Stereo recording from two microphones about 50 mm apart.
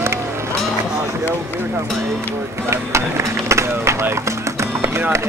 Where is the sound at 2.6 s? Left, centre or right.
Right.